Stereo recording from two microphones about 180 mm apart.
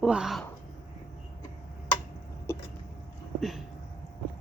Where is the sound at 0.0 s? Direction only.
5° right (ahead or behind).